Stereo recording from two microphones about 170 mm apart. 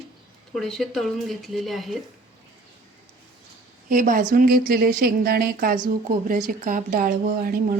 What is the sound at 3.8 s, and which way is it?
Speech, 55° right (ahead or behind).